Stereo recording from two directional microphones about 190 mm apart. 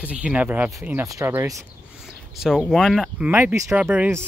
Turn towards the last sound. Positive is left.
turn(degrees=-10)  # may be behind; listen again after turning